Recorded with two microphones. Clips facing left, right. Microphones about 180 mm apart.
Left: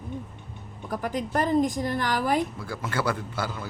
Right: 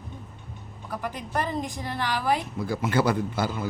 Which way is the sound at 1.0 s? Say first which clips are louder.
Left 3 dB; 45° left (ahead or behind).